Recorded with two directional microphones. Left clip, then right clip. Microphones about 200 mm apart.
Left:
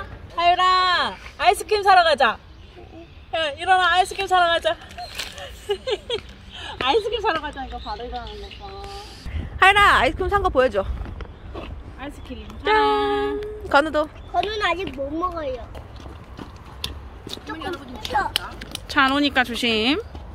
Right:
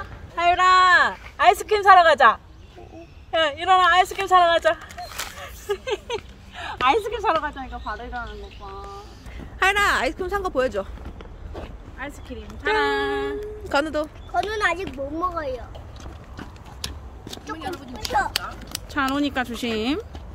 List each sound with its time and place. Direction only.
0.4 s a sound: 30° right (ahead or behind)
3.3 s speech: 30° right (ahead or behind)
5.1 s single-lens reflex camera: 15° right (ahead or behind)
6.0 s a sound: 15° right (ahead or behind)
7.2 s speech: 15° right (ahead or behind)
9.6 s speech: centre (ahead or behind)
12.0 s speech: 15° right (ahead or behind)
13.4 s speech: centre (ahead or behind)
14.4 s speech: 10° right (ahead or behind)
18.0 s speech: 15° right (ahead or behind)
18.6 s speech: centre (ahead or behind)